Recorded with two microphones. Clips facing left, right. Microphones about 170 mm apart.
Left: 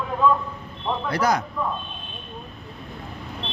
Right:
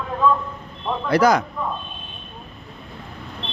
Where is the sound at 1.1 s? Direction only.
90° right.